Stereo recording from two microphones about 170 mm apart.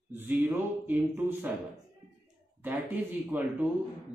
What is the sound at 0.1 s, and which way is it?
Speech, 10° right (ahead or behind).